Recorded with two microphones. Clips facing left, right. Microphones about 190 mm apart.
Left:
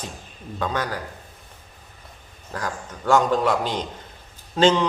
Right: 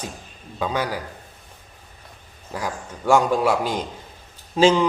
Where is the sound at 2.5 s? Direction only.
10° right (ahead or behind).